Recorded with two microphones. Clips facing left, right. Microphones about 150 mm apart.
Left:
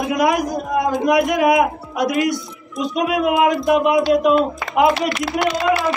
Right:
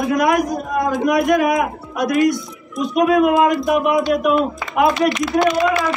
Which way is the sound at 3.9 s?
20° left (ahead or behind).